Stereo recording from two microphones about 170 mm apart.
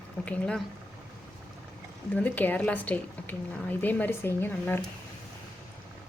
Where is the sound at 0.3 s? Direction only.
5° left (ahead or behind).